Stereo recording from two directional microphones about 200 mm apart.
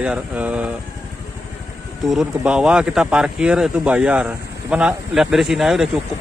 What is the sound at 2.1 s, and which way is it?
Speech, 5° right (ahead or behind).